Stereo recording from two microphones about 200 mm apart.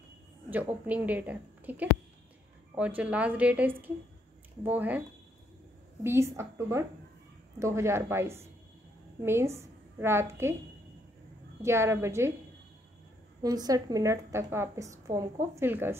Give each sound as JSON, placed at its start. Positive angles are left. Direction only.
{"t": 0.5, "sound": "a woman's voice", "side_deg": -10}
{"t": 6.0, "sound": "a woman's voice", "side_deg": -15}
{"t": 11.6, "sound": "a woman's voice", "side_deg": -15}
{"t": 13.4, "sound": "a woman's voice", "side_deg": -20}